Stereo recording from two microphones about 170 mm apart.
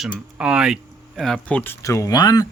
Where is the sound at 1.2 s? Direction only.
5° left (ahead or behind); by 2.5 s 20° left (ahead or behind).